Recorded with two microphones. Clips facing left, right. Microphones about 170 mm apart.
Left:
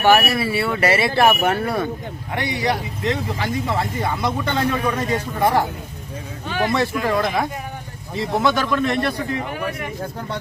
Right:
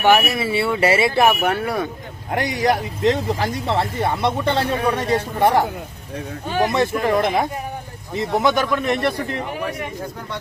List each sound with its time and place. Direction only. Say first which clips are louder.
0.0 s a man's voice: even; 15° right (ahead or behind)
1.1 s speech: even; 5° right (ahead or behind)
2.3 s a man's voice: right 3 dB; 45° right (ahead or behind); by 9.1 s 20° right (ahead or behind)